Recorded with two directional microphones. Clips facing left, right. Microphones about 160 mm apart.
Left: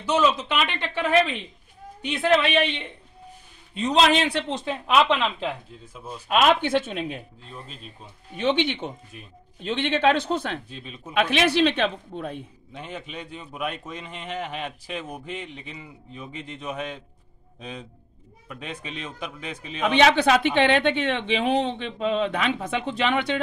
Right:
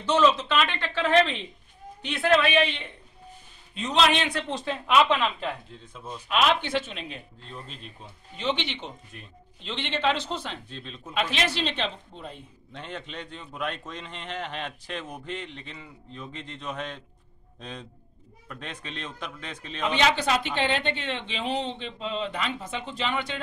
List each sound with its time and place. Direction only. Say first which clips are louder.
0.0 s a man's voice: even; 10° left (ahead or behind); by 4.5 s 30° left (ahead or behind)
4.5 s a man's voice: left 2 dB; 20° left (ahead or behind)
5.9 s speech: left 1 dB; 5° left (ahead or behind)
6.2 s speech: left 4 dB; 50° left (ahead or behind)
7.4 s speech: left 1 dB; 5° left (ahead or behind)
8.6 s speech: left 7 dB; 50° left (ahead or behind)
9.1 s speech: left 2 dB; 5° left (ahead or behind)
9.6 s speech: left 6 dB; 50° left (ahead or behind)
10.7 s a man's voice: left 1 dB; 10° left (ahead or behind)
11.1 s speech: left 7 dB; 60° left (ahead or behind)
12.7 s a man's voice: left 2 dB; 10° left (ahead or behind)
20.0 s a woman's voice: left 6 dB; 65° left (ahead or behind)